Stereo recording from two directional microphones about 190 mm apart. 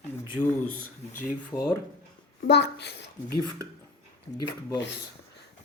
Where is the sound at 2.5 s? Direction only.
60° left (ahead or behind).